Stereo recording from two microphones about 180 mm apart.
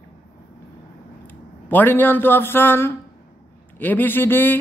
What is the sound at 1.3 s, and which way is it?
Speech, 10° left (ahead or behind).